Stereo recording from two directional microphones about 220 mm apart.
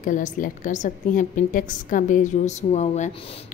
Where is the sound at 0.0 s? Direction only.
35° left (ahead or behind).